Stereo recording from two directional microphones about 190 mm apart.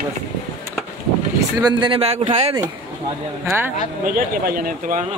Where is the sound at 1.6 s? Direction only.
25° right (ahead or behind).